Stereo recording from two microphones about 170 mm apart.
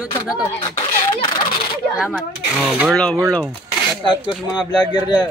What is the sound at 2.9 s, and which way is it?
Speech, 5° left (ahead or behind).